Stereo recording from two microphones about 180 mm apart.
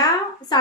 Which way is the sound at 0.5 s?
20° left (ahead or behind).